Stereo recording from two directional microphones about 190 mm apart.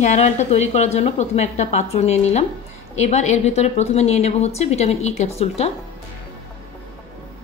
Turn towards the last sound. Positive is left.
turn(degrees=35)  # may be behind; listen again after turning